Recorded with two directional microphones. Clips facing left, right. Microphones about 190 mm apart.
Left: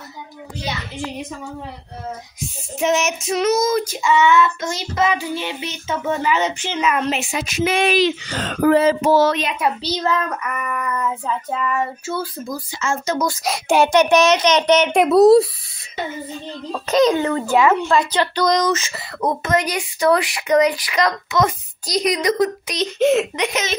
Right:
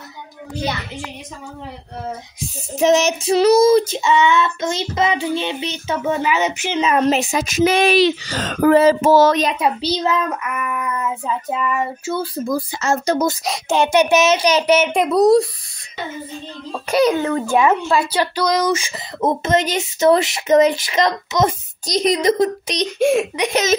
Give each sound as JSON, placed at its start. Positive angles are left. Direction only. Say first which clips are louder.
{"t": 2.8, "sound": "speech", "louder": "right 4 dB", "side_deg": -35}
{"t": 5.9, "sound": "child singing", "louder": "right 1 dB", "side_deg": -10}
{"t": 7.0, "sound": "speech", "louder": "right 5 dB", "side_deg": -40}
{"t": 9.6, "sound": "child singing", "louder": "right 2 dB", "side_deg": -15}
{"t": 12.7, "sound": "speech", "louder": "right 1 dB", "side_deg": -40}
{"t": 13.4, "sound": "a child's voice", "louder": "left 2 dB", "side_deg": 5}
{"t": 13.9, "sound": "child singing", "louder": "right 1 dB", "side_deg": -5}
{"t": 14.4, "sound": "a child's voice", "louder": "even", "side_deg": -10}
{"t": 16.7, "sound": "child singing", "louder": "even", "side_deg": -10}
{"t": 19.2, "sound": "speech", "louder": "right 2 dB", "side_deg": -25}
{"t": 22.9, "sound": "child singing", "louder": "even", "side_deg": -10}
{"t": 23.5, "sound": "speech", "louder": "right 7 dB", "side_deg": -40}